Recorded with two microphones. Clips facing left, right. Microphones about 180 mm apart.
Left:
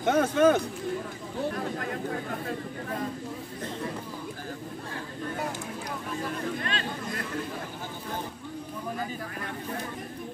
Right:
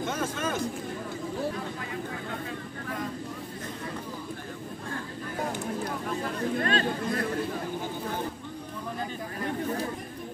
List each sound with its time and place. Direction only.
0.0 s speech: 65° left (ahead or behind)
6.6 s speech: 45° right (ahead or behind)